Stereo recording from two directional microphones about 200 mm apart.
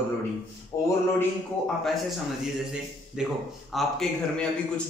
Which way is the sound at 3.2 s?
5° right (ahead or behind).